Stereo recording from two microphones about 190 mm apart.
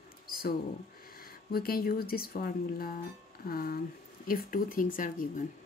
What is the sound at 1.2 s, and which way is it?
Speech, 50° left (ahead or behind).